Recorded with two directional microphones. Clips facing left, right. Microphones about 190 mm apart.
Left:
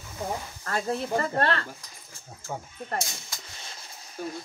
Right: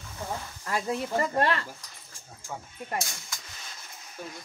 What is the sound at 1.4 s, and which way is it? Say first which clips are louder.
Speech: even; 15° right (ahead or behind).